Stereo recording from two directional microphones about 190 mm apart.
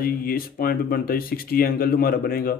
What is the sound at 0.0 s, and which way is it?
Speech, 50° left (ahead or behind).